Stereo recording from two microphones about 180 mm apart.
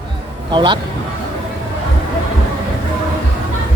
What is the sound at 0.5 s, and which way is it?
Speech, 25° right (ahead or behind).